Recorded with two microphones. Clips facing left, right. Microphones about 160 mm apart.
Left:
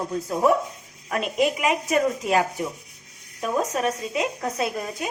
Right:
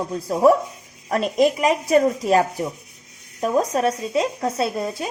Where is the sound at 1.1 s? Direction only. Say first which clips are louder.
Right 5 dB; 35° right (ahead or behind).